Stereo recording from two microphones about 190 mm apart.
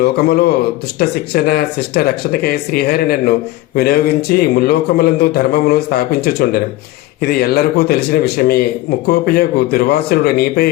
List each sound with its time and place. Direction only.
0.0 s a man's voice: 55° left (ahead or behind)